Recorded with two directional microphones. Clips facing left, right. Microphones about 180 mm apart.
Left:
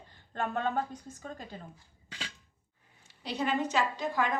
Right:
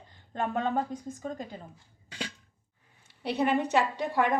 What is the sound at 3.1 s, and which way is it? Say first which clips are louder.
A woman's voice: right 5 dB; 60° right (ahead or behind).